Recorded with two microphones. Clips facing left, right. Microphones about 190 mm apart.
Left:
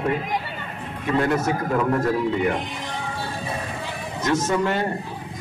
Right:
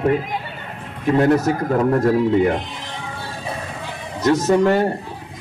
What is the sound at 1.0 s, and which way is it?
Speech, 40° right (ahead or behind).